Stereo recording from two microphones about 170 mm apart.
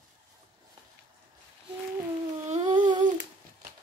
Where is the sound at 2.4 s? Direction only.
35° right (ahead or behind).